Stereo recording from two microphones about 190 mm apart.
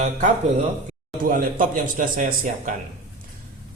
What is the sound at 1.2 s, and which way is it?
A man's voice, 45° right (ahead or behind).